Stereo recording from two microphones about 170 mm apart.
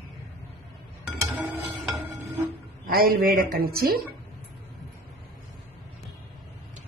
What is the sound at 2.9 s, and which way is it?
Speech, 65° right (ahead or behind).